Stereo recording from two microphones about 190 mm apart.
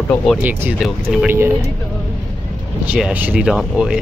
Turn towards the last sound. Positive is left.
turn(degrees=0)  # may be behind; listen again after turning